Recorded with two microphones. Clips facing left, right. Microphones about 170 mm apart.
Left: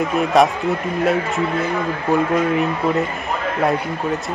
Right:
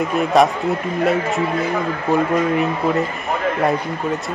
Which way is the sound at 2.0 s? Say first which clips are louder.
Even; centre (ahead or behind).